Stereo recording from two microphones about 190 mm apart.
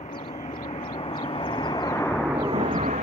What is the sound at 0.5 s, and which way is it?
Vehicle, 25° left (ahead or behind).